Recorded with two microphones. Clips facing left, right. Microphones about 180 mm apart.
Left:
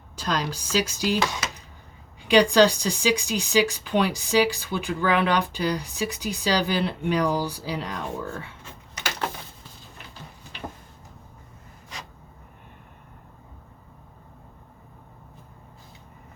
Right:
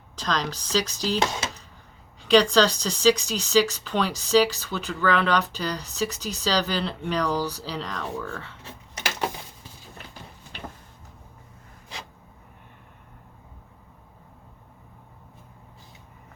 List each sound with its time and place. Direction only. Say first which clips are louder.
0.2 s speech: even; 10° left (ahead or behind)
1.2 s speech: right 1 dB; 25° right (ahead or behind)
2.2 s speech: left 1 dB; 10° left (ahead or behind)